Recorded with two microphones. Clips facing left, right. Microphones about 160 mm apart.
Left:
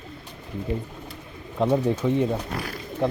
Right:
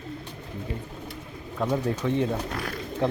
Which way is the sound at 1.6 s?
20° left (ahead or behind).